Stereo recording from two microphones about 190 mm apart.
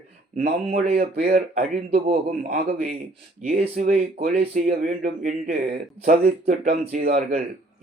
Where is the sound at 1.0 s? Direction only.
45° right (ahead or behind).